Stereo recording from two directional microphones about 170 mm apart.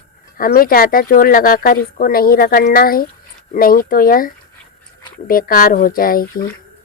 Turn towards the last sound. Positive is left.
turn(degrees=60)  # may be behind; listen again after turning